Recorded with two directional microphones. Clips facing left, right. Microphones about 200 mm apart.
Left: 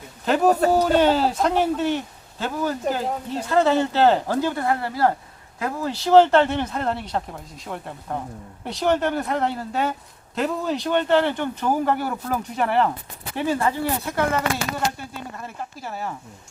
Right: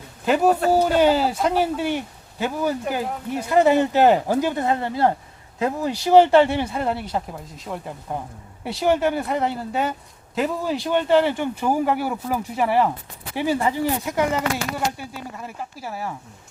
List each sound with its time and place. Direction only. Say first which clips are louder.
0.3 s speech: even; 5° right (ahead or behind)